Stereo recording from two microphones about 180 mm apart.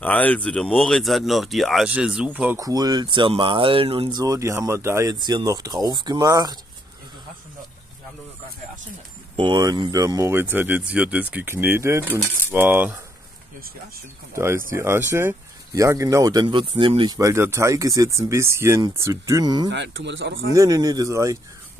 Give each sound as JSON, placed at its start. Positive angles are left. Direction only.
{"t": 0.0, "sound": "speech", "side_deg": 10}
{"t": 2.6, "sound": "speech", "side_deg": -20}
{"t": 9.4, "sound": "speech", "side_deg": -25}
{"t": 14.3, "sound": "speech", "side_deg": -15}
{"t": 19.7, "sound": "speech", "side_deg": -80}
{"t": 20.5, "sound": "speech", "side_deg": -20}